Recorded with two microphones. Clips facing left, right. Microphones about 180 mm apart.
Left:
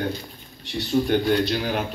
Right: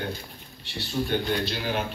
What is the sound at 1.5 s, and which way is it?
Speech, 50° left (ahead or behind).